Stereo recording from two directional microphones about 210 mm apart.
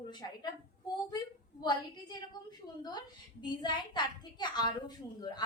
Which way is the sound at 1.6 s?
20° left (ahead or behind).